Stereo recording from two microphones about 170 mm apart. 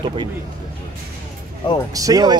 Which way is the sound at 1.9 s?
20° right (ahead or behind).